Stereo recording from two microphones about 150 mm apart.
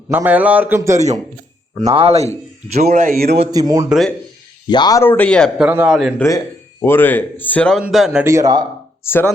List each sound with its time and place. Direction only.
0.1 s a man's voice: 10° right (ahead or behind)
1.7 s speech: 40° right (ahead or behind)
2.7 s speech: 55° right (ahead or behind); by 3.3 s 85° right
3.5 s speech: 25° right (ahead or behind)
3.8 s speech: centre (ahead or behind)
4.7 s speech: 25° left (ahead or behind)
5.0 s a man's voice: 10° left (ahead or behind)
5.5 s a man's voice: 10° right (ahead or behind)
6.8 s a man's voice: 15° left (ahead or behind)
7.8 s speech: centre (ahead or behind)
8.2 s speech: 20° right (ahead or behind)
9.0 s a man's voice: 15° left (ahead or behind)